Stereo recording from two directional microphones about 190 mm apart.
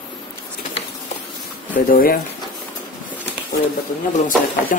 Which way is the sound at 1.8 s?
50° left (ahead or behind).